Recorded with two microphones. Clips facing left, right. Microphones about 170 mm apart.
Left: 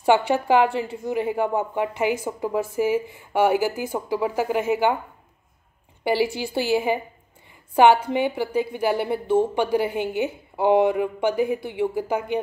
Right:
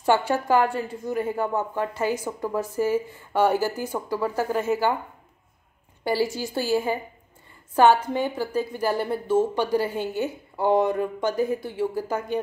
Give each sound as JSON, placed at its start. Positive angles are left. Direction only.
{"t": 0.0, "sound": "a woman's voice", "side_deg": 15}
{"t": 0.7, "sound": "a woman's voice", "side_deg": 70}
{"t": 1.0, "sound": "a woman's voice", "side_deg": 15}
{"t": 6.4, "sound": "a woman's voice", "side_deg": 20}